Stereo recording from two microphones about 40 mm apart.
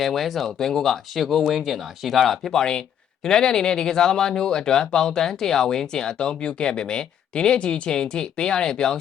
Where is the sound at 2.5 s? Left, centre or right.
Centre.